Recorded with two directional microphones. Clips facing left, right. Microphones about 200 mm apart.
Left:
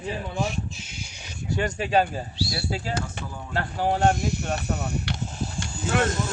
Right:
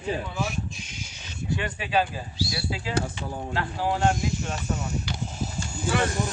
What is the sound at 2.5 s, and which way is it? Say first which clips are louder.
Speech: left 2 dB; 40° left (ahead or behind).